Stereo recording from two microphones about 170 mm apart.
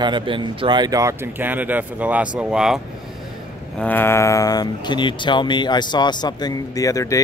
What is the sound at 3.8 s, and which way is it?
Speech, 10° left (ahead or behind).